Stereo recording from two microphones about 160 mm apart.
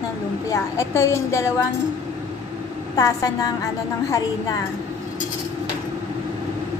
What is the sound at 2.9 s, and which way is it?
A woman's voice, 25° left (ahead or behind).